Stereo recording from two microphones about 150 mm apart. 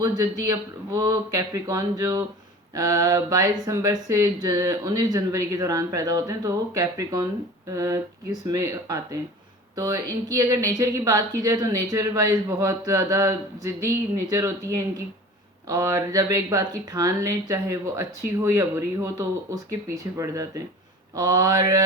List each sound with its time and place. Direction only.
0.2 s a woman's voice: 25° right (ahead or behind)